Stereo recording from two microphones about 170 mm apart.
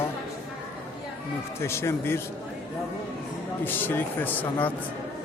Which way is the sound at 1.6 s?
15° left (ahead or behind).